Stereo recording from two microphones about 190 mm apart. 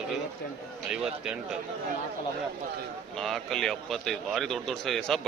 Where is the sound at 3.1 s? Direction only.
Centre (ahead or behind).